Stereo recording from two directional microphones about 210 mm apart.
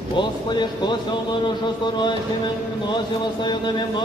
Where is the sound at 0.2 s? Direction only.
20° left (ahead or behind).